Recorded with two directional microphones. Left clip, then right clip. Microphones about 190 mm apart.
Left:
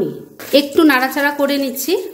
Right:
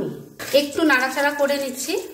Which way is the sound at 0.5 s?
50° left (ahead or behind).